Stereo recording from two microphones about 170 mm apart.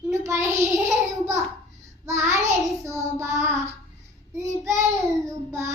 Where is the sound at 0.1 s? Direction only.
15° right (ahead or behind).